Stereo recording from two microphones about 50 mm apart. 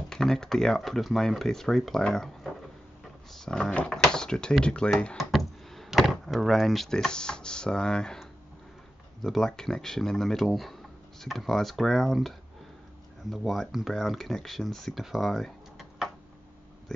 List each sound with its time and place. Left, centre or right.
0.1 s speech: centre
5.1 s door: centre
7.1 s speech: centre
9.2 s speech: centre
13.9 s speech: centre